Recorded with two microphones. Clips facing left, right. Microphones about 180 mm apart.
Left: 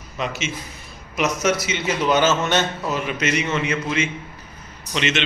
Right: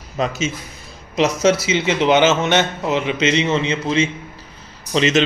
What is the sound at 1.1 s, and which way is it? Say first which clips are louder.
A man's voice: right 5 dB; 30° right (ahead or behind).